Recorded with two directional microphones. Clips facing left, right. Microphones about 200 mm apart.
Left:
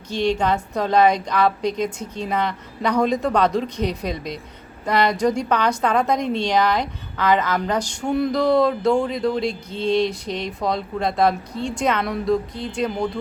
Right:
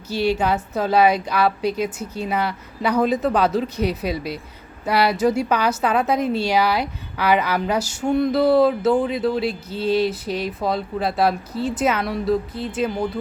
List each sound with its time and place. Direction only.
0.1 s a woman's voice: 5° right (ahead or behind)